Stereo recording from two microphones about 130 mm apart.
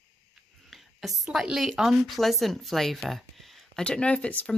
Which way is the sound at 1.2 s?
5° right (ahead or behind).